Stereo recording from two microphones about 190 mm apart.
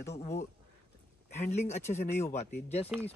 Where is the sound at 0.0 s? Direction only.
15° left (ahead or behind).